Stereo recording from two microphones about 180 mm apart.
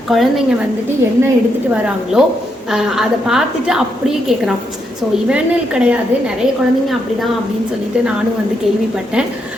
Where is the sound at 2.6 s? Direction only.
Centre (ahead or behind).